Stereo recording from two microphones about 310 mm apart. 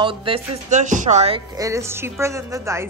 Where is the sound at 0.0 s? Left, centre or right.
Centre.